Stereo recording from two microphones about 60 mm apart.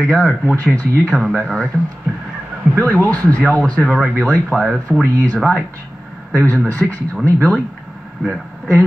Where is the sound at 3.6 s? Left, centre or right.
Centre.